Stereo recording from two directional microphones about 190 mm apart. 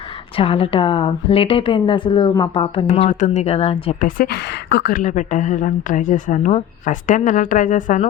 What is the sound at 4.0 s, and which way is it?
Speech, 45° left (ahead or behind).